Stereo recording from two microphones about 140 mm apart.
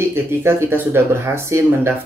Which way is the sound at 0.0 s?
20° right (ahead or behind).